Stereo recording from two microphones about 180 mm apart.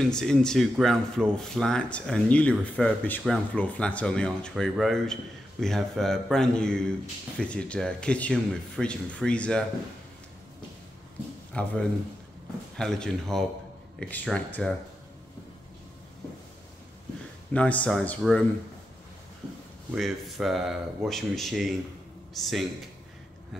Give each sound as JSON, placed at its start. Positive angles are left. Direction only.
{"t": 0.1, "sound": "speech", "side_deg": 5}
{"t": 11.5, "sound": "speech", "side_deg": 5}
{"t": 17.5, "sound": "speech", "side_deg": 10}
{"t": 19.9, "sound": "speech", "side_deg": 0}